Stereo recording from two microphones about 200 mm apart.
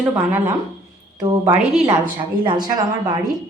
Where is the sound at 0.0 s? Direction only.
10° right (ahead or behind).